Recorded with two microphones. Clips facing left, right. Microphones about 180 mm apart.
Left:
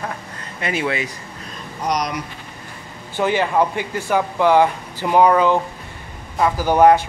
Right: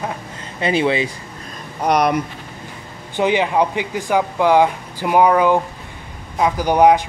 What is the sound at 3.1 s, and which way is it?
Speech, 15° right (ahead or behind).